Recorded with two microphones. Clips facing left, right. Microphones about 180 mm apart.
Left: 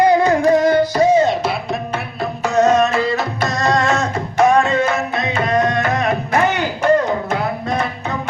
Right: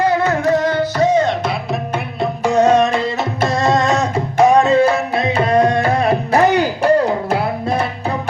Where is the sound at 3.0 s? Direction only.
25° right (ahead or behind).